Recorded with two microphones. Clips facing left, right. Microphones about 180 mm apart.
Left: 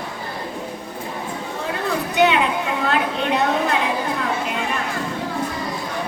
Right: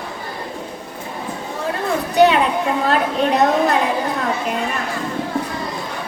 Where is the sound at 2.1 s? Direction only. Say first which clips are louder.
Right 4 dB; 40° right (ahead or behind).